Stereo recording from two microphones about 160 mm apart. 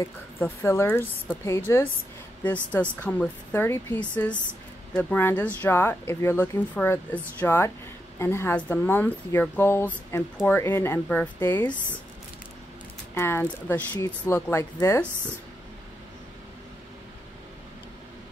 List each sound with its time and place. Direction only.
0.4 s speech: 15° left (ahead or behind)
13.1 s speech: 15° left (ahead or behind)